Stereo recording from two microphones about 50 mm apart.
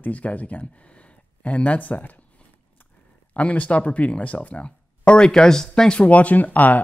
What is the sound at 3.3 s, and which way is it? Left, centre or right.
Speech, left.